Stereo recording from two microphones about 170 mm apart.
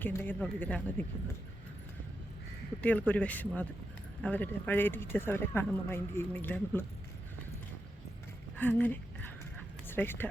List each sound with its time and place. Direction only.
0.0 s speech: 10° left (ahead or behind)
2.8 s speech: 10° left (ahead or behind)
8.5 s a sound: 10° left (ahead or behind)
9.8 s speech: 10° left (ahead or behind)